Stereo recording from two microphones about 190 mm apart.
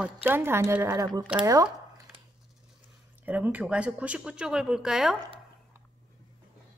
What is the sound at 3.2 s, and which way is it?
Speech, 10° right (ahead or behind).